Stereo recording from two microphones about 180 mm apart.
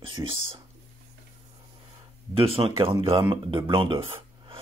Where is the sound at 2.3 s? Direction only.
30° right (ahead or behind).